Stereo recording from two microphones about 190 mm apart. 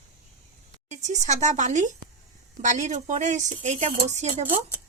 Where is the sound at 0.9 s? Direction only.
40° right (ahead or behind).